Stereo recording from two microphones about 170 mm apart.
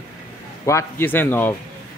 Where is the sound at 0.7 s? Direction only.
15° left (ahead or behind).